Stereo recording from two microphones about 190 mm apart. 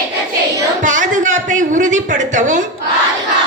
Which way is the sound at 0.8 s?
40° right (ahead or behind).